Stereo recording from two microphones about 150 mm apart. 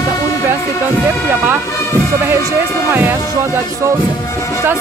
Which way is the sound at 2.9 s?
15° right (ahead or behind).